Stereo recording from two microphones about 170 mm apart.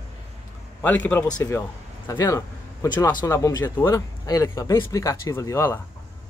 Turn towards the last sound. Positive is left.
turn(degrees=15)  # may be behind; listen again after turning